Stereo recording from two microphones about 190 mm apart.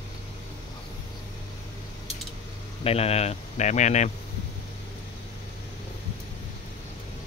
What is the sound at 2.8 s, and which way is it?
Speech, 30° left (ahead or behind).